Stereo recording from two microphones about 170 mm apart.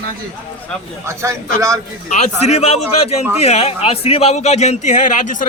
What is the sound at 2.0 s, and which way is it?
A man's voice, 40° left (ahead or behind).